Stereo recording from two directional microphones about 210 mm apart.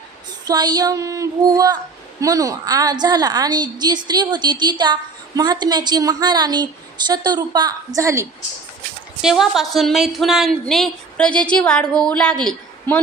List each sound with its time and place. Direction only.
0.4 s child singing: 20° right (ahead or behind)
2.2 s a woman's voice: 15° right (ahead or behind)
7.9 s child singing: 15° right (ahead or behind)
9.2 s speech: centre (ahead or behind)